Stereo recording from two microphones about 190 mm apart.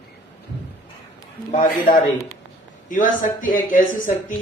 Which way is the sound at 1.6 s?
45° left (ahead or behind).